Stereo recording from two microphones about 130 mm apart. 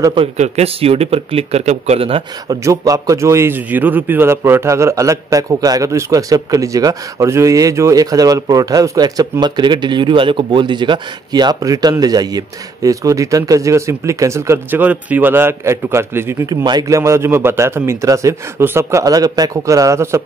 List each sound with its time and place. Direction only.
0.4 s speech: 50° right (ahead or behind)
2.5 s a man's voice: 25° right (ahead or behind)
16.4 s a man's voice: 30° right (ahead or behind)